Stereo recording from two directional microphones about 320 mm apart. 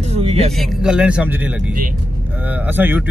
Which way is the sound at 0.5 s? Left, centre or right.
Centre.